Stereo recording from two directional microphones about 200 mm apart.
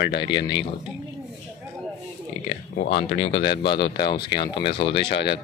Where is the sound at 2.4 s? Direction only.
50° left (ahead or behind); by 3.8 s 25° left (ahead or behind).